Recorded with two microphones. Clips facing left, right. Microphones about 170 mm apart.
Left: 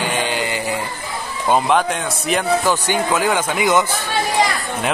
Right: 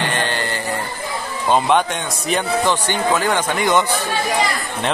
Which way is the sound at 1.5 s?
Centre (ahead or behind).